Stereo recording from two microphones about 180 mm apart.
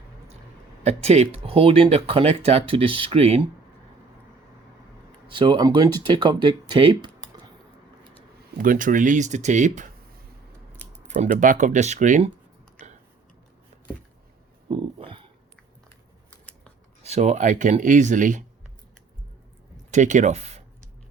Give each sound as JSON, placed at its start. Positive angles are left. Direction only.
{"t": 0.9, "sound": "speech", "side_deg": -35}
{"t": 5.3, "sound": "speech", "side_deg": -25}
{"t": 8.5, "sound": "speech", "side_deg": -50}
{"t": 14.7, "sound": "speech", "side_deg": -30}
{"t": 16.3, "sound": "scissors", "side_deg": 5}
{"t": 17.0, "sound": "speech", "side_deg": -35}
{"t": 19.9, "sound": "speech", "side_deg": -45}